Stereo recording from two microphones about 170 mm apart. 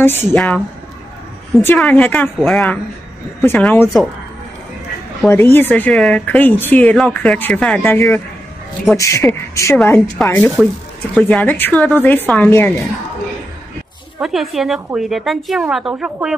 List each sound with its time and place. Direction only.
0.0 s speech: 15° left (ahead or behind)
1.6 s speech: 10° left (ahead or behind)
5.2 s speech: 10° left (ahead or behind)
14.2 s a woman's voice: centre (ahead or behind)